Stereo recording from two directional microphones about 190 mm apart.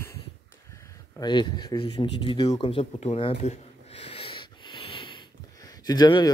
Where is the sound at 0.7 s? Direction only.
20° left (ahead or behind).